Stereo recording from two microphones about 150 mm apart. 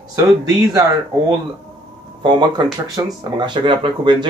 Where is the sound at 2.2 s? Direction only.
30° right (ahead or behind).